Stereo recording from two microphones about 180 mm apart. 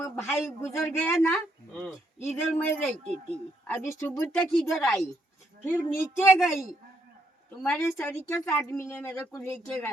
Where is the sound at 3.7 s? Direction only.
15° left (ahead or behind).